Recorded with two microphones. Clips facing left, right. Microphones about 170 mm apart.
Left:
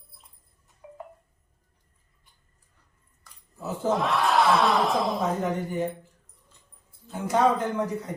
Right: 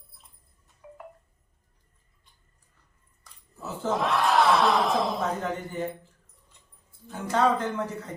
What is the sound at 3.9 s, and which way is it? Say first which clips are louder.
Speech: even; centre (ahead or behind).